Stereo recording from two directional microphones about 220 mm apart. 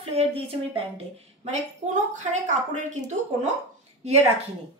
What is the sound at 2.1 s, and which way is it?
Speech, 35° right (ahead or behind).